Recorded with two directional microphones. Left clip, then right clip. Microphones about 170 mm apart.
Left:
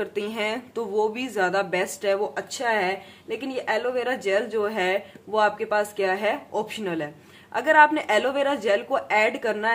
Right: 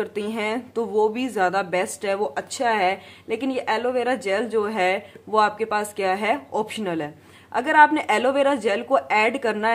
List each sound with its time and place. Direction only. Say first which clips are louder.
0.0 s speech: right 1 dB; 30° right (ahead or behind)